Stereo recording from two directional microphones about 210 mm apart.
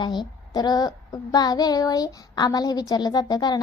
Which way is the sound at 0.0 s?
20° left (ahead or behind).